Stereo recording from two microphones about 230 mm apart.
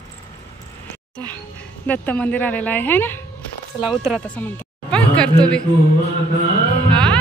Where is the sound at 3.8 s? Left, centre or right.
Centre.